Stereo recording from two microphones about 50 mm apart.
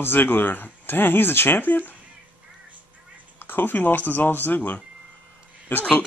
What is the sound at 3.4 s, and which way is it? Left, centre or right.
Speech, left.